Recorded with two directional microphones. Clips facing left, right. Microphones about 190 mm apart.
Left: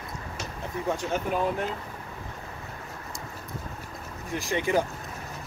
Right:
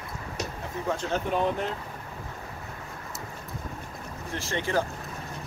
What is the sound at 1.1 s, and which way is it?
Speech, 5° left (ahead or behind).